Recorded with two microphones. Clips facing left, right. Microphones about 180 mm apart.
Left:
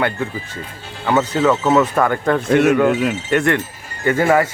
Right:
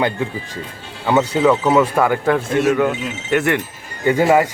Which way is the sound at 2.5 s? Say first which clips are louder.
Left 5 dB; 65° left (ahead or behind).